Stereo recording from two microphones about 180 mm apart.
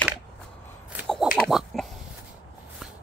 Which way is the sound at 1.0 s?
Centre (ahead or behind).